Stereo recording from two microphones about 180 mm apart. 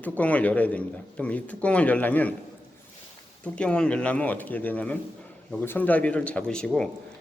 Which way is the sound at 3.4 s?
5° left (ahead or behind).